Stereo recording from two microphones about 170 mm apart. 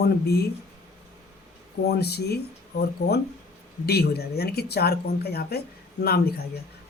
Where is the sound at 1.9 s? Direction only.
70° left (ahead or behind).